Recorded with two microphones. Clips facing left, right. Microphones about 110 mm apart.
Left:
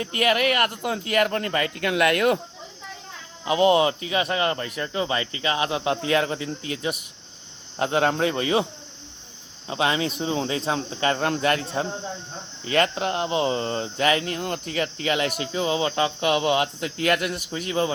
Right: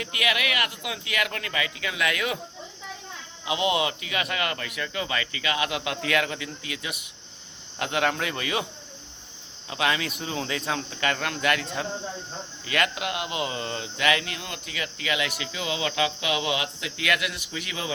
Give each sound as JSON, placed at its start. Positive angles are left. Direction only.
{"t": 0.0, "sound": "speech", "side_deg": 40}
{"t": 3.4, "sound": "speech", "side_deg": 40}
{"t": 9.6, "sound": "speech", "side_deg": 30}